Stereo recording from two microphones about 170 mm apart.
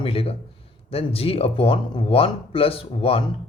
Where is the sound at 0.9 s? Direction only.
35° left (ahead or behind).